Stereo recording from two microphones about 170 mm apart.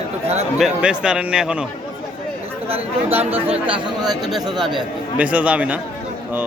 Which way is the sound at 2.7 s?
35° right (ahead or behind).